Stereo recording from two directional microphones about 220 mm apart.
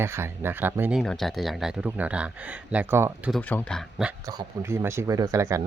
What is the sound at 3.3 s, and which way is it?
Speech, 5° left (ahead or behind).